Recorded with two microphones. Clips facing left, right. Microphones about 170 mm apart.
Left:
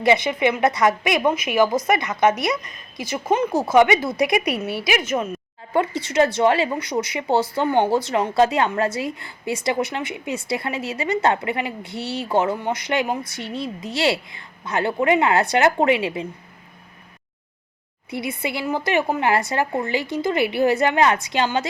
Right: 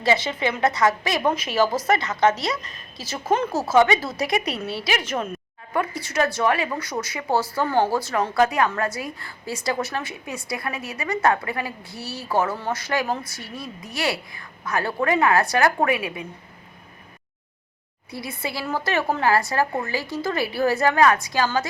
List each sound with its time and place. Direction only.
0.0 s a woman's voice: 15° left (ahead or behind)
5.7 s a woman's voice: 25° left (ahead or behind)
18.1 s a woman's voice: 20° left (ahead or behind)